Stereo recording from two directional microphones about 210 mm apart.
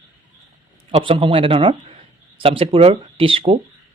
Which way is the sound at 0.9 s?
25° right (ahead or behind).